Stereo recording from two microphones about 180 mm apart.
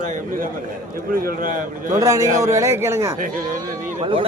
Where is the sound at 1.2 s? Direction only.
50° right (ahead or behind).